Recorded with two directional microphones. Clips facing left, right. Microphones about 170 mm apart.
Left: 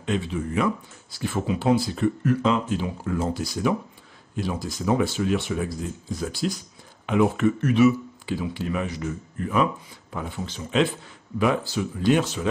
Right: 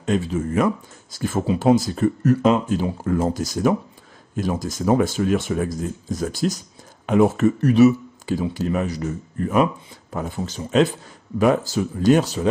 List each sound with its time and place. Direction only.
0.0 s speech: 40° right (ahead or behind)